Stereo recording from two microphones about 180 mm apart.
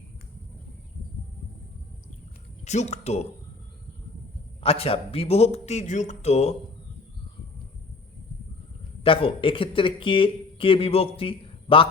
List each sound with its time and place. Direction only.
2.6 s speech: 40° left (ahead or behind)
4.6 s speech: 30° left (ahead or behind)
9.0 s speech: 30° left (ahead or behind)